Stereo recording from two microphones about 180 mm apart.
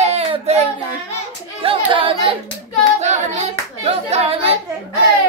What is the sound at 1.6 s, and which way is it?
Speech, 30° right (ahead or behind).